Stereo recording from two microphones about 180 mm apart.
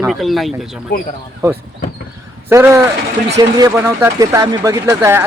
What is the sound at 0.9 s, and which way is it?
Speech, 50° left (ahead or behind).